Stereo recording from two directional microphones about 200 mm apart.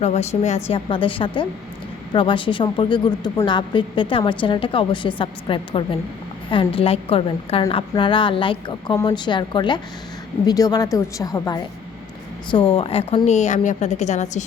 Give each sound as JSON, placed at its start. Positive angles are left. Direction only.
{"t": 0.0, "sound": "a woman's voice", "side_deg": 35}